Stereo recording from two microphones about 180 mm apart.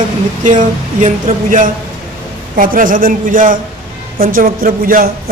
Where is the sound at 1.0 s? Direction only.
45° right (ahead or behind).